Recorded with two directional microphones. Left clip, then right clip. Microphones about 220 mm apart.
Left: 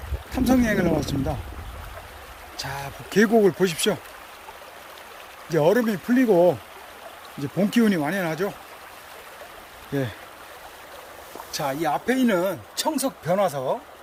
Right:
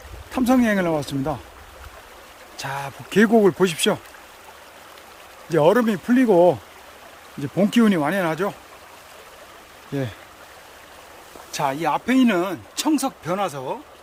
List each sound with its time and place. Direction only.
0.3 s speech: 15° right (ahead or behind)
2.6 s speech: 15° right (ahead or behind)
5.5 s speech: 15° right (ahead or behind)
11.5 s speech: 10° right (ahead or behind)